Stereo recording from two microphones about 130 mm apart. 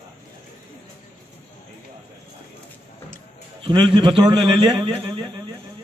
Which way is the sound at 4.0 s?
35° right (ahead or behind).